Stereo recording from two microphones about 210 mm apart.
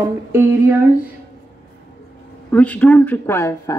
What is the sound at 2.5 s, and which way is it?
Speech, 5° left (ahead or behind).